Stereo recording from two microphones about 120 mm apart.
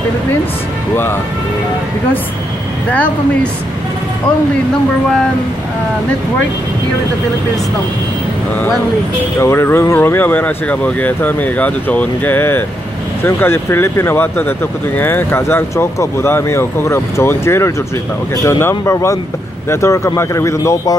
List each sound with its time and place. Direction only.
9.4 s speech: 20° left (ahead or behind)